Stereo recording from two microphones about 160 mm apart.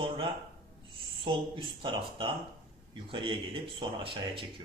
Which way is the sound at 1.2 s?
30° right (ahead or behind).